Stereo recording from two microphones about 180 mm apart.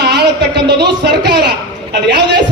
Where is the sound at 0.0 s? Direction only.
70° right (ahead or behind).